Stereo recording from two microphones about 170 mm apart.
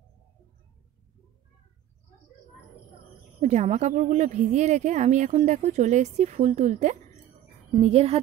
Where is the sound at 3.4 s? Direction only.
40° right (ahead or behind).